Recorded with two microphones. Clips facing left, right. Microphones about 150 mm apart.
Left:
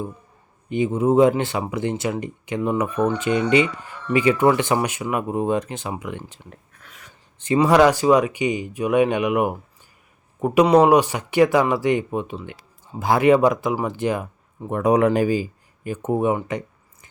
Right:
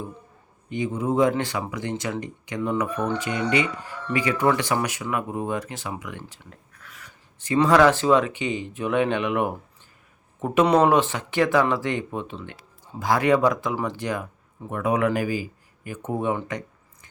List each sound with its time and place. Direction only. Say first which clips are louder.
0.8 s speech: left 6 dB; 20° left (ahead or behind)
6.4 s a sound: left 3 dB; 20° left (ahead or behind)
7.4 s speech: left 2 dB; 20° left (ahead or behind)
14.7 s speech: left 5 dB; 35° left (ahead or behind)